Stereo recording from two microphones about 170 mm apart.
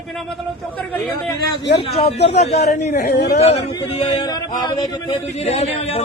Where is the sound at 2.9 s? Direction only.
80° left.